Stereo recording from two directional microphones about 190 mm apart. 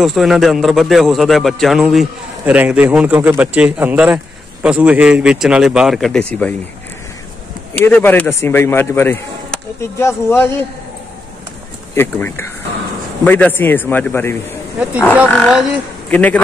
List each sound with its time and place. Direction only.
0.0 s a man's voice: centre (ahead or behind)
7.7 s speech: 10° left (ahead or behind)
11.9 s speech: 10° left (ahead or behind)
14.8 s speech: 5° right (ahead or behind)
15.2 s a man's voice: 5° left (ahead or behind)